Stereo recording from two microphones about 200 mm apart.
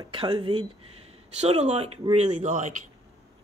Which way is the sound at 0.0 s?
25° right (ahead or behind).